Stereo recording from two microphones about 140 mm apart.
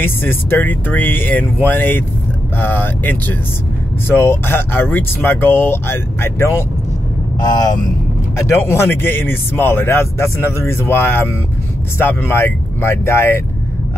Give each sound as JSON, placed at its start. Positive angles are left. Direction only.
{"t": 0.0, "sound": "speech", "side_deg": 15}
{"t": 7.3, "sound": "speech", "side_deg": 30}
{"t": 8.4, "sound": "speech", "side_deg": 20}